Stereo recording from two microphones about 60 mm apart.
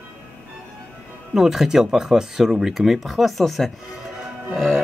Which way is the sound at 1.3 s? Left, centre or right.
Centre.